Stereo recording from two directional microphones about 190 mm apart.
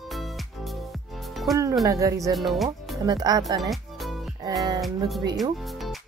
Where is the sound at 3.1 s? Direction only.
20° right (ahead or behind).